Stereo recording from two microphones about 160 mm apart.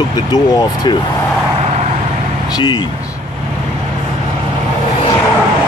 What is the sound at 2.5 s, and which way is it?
Speech, 30° left (ahead or behind).